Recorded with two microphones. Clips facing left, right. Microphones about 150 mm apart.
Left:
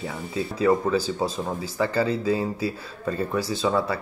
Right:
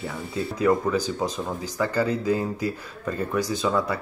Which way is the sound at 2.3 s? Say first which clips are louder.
Even; 10° left (ahead or behind).